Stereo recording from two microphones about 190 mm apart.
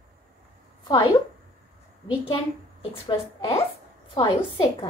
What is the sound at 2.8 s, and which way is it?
Speech, 30° left (ahead or behind).